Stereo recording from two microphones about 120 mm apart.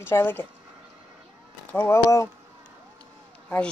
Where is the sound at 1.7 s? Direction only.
20° left (ahead or behind).